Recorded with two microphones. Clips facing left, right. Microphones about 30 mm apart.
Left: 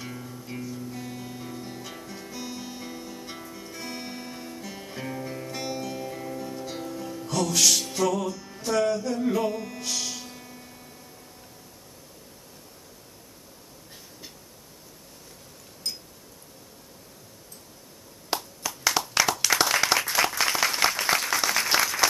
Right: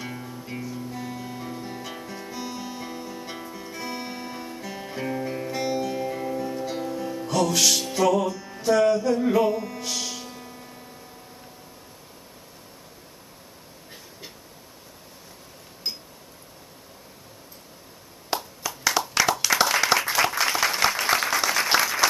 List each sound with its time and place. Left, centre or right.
0.0 s music: centre
5.5 s music: centre
15.8 s a sound: right
18.3 s clapping: centre
19.3 s applause: centre